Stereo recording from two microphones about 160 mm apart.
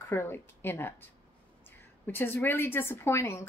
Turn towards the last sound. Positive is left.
turn(degrees=15)  # may be behind; listen again after turning